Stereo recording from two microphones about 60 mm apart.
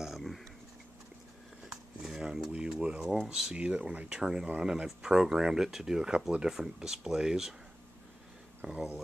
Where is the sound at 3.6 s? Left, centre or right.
Right.